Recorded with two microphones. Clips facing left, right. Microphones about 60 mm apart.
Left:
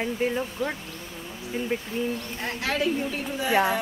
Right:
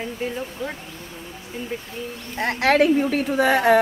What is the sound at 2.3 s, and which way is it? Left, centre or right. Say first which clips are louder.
A woman's voice: right 13 dB; right.